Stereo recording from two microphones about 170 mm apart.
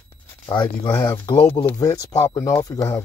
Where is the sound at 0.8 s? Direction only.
25° left (ahead or behind).